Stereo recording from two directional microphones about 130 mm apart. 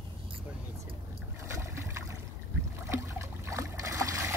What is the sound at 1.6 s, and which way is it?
Boat, 20° right (ahead or behind).